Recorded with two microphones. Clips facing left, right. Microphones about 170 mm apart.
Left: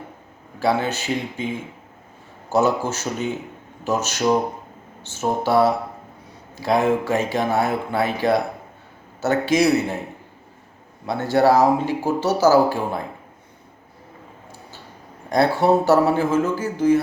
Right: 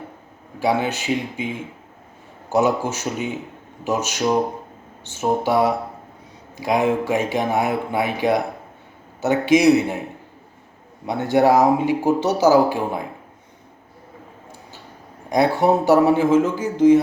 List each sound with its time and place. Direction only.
0.6 s speech: 15° right (ahead or behind)
2.5 s speech: 15° right (ahead or behind)
11.0 s speech: 15° right (ahead or behind)
15.3 s speech: 15° right (ahead or behind)